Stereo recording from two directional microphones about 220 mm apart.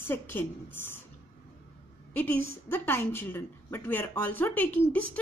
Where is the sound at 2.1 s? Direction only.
10° left (ahead or behind).